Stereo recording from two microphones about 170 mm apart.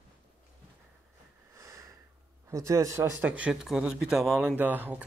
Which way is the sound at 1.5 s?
15° right (ahead or behind).